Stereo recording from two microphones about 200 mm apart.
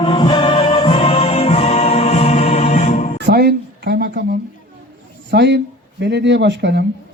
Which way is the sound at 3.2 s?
55° right (ahead or behind).